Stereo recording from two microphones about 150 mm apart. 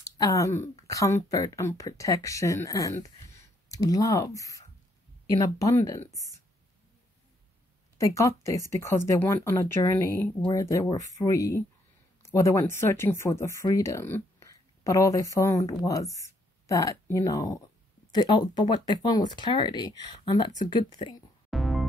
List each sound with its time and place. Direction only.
0.0 s speech: 20° left (ahead or behind)
8.0 s speech: 20° left (ahead or behind)
21.5 s music: centre (ahead or behind)